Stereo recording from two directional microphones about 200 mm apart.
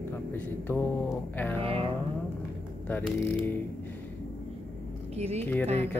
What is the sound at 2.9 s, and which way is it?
Speech, 10° left (ahead or behind).